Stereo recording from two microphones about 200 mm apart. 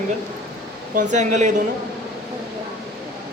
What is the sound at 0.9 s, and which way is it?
Speech, 35° right (ahead or behind).